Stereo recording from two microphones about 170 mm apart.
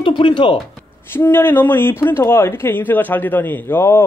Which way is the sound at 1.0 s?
15° left (ahead or behind).